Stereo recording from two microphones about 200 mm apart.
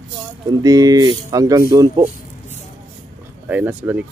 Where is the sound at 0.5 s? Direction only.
20° right (ahead or behind).